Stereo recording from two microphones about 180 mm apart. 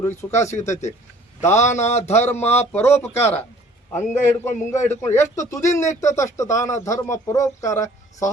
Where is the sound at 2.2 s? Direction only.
10° left (ahead or behind).